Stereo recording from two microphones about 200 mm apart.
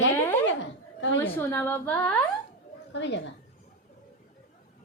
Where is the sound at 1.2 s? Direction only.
10° left (ahead or behind).